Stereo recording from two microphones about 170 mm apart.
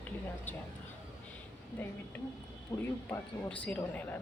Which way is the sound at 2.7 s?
20° left (ahead or behind).